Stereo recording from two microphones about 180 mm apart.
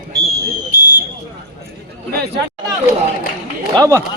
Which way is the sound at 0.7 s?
50° right (ahead or behind).